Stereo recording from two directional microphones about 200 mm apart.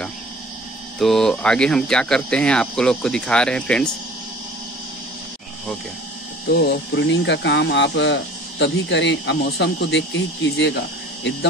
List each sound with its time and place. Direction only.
0.9 s speech: centre (ahead or behind)
6.5 s speech: 55° left (ahead or behind)